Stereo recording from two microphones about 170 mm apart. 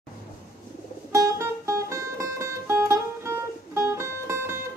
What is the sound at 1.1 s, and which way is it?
Music, 15° right (ahead or behind).